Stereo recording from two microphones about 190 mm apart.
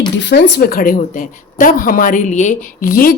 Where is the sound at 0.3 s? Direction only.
65° left (ahead or behind).